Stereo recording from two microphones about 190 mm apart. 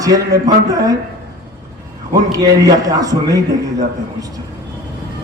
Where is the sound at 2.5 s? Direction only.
20° right (ahead or behind).